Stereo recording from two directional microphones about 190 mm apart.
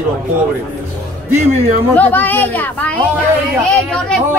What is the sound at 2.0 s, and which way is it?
Speech, 10° left (ahead or behind).